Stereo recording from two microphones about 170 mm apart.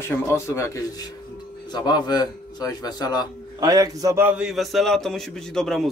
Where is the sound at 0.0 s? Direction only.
15° left (ahead or behind).